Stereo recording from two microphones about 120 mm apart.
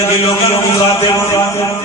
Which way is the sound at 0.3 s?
50° left (ahead or behind).